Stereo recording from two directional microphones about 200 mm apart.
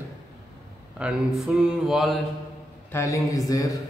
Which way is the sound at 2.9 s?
15° left (ahead or behind).